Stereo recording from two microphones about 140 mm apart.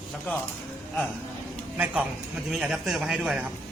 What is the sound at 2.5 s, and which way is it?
A woman's voice, 5° right (ahead or behind).